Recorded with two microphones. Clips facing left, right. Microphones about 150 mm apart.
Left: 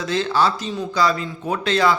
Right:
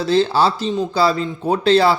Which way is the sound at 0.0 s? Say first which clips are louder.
Right 4 dB; 30° right (ahead or behind).